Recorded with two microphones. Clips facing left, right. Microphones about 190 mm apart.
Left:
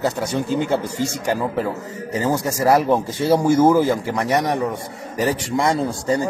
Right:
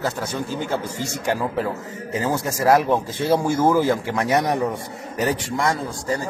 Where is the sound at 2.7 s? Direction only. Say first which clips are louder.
Left 1 dB; 10° left (ahead or behind).